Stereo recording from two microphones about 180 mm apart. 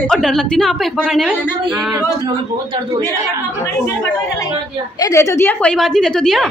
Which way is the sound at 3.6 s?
15° left (ahead or behind).